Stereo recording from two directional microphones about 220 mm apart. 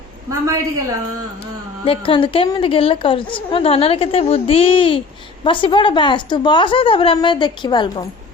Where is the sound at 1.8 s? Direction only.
25° left (ahead or behind).